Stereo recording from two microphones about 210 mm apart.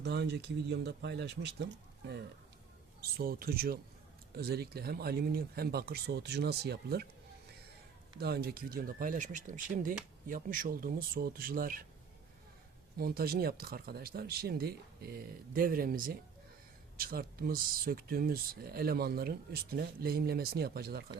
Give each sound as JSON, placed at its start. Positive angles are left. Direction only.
{"t": 0.0, "sound": "speech", "side_deg": -55}
{"t": 3.0, "sound": "speech", "side_deg": -45}
{"t": 8.2, "sound": "speech", "side_deg": -50}
{"t": 13.0, "sound": "speech", "side_deg": -45}